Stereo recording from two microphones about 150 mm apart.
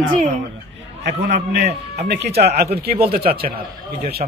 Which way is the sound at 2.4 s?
90° right.